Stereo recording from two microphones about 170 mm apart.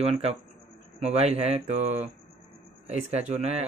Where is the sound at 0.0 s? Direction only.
35° right (ahead or behind).